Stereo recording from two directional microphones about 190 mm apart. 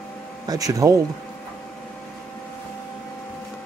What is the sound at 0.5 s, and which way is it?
Speech, 20° right (ahead or behind).